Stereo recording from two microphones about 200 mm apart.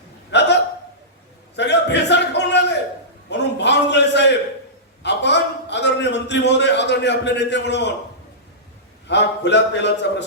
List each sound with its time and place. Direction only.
0.3 s hiccup: 60° left (ahead or behind)
1.5 s a sound: 60° left (ahead or behind)
9.0 s a man's voice: 60° left (ahead or behind)